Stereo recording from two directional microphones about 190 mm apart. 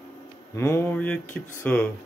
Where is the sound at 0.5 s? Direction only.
15° left (ahead or behind).